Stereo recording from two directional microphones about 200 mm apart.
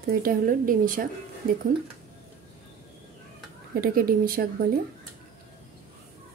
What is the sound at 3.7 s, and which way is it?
A woman's voice, 45° right (ahead or behind).